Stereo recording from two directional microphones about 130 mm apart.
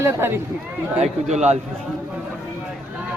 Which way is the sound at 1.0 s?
60° right (ahead or behind).